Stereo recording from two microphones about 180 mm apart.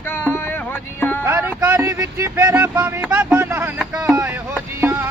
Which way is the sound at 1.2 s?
10° right (ahead or behind).